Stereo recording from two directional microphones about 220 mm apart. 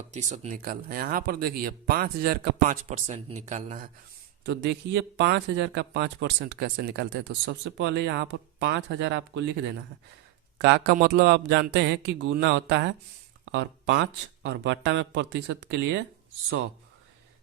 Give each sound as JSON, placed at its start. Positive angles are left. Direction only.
{"t": 0.1, "sound": "speech", "side_deg": -30}
{"t": 4.4, "sound": "speech", "side_deg": -50}
{"t": 10.6, "sound": "speech", "side_deg": -50}